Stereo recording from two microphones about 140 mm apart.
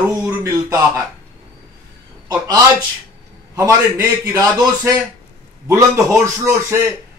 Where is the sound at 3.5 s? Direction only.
25° right (ahead or behind).